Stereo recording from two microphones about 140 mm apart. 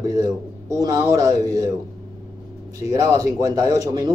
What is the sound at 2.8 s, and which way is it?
A man's voice, 25° right (ahead or behind).